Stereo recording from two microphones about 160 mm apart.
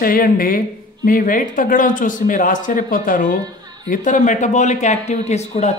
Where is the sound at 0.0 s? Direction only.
60° left (ahead or behind).